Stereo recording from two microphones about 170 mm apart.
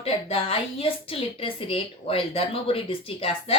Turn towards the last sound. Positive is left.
turn(degrees=30)  # may be behind; listen again after turning